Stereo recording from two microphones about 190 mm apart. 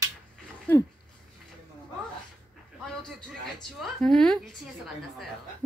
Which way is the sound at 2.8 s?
Centre (ahead or behind).